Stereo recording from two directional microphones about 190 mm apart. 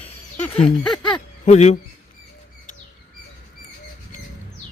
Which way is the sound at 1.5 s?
35° left (ahead or behind).